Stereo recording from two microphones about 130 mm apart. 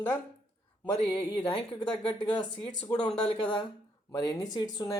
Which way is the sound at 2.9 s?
30° left (ahead or behind).